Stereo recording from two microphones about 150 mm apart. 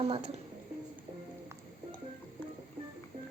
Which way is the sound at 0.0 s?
40° right (ahead or behind).